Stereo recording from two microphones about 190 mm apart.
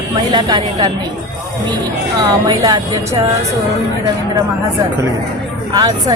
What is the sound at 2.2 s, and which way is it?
Speech, 20° right (ahead or behind).